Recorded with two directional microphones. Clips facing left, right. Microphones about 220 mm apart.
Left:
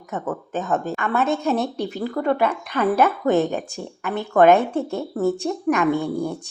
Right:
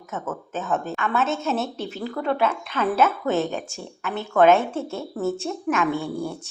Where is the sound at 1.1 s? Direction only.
15° left (ahead or behind).